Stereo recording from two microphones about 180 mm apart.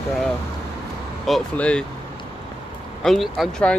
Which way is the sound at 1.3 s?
5° left (ahead or behind).